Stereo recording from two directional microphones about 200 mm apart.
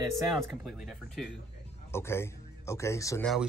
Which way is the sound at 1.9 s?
10° left (ahead or behind).